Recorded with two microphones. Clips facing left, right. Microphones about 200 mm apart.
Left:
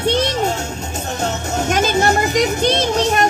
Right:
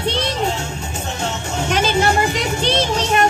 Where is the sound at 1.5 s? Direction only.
45° left (ahead or behind).